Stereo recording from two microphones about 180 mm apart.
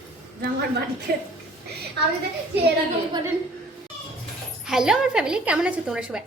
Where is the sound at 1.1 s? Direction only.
55° right (ahead or behind).